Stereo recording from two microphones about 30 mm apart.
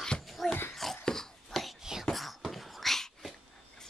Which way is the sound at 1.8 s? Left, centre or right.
Centre.